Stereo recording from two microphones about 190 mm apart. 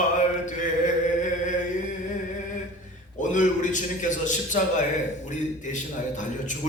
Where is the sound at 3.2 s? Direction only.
40° left (ahead or behind).